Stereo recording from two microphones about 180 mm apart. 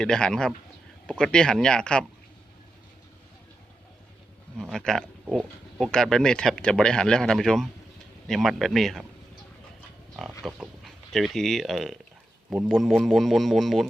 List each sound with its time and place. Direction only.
0.0 s speech: 5° left (ahead or behind)
4.5 s speech: centre (ahead or behind)
10.4 s speech: centre (ahead or behind)